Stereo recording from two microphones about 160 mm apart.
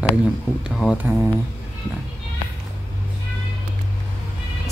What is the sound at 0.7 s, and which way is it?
Speech, 5° right (ahead or behind).